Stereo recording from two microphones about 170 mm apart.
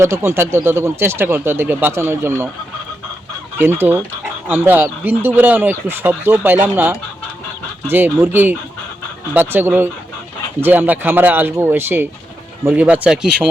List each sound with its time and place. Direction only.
0.0 s speech: 15° right (ahead or behind)
3.6 s speech: 10° right (ahead or behind)